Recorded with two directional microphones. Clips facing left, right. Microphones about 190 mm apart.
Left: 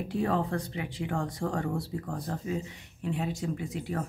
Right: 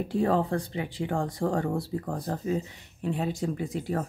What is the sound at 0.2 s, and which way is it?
Speech, 30° right (ahead or behind).